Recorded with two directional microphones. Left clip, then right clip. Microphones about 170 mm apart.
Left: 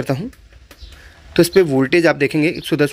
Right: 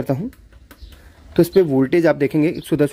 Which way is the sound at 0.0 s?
10° right (ahead or behind).